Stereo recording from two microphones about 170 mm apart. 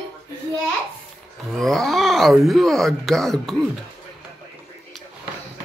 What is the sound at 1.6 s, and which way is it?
Speech, centre (ahead or behind).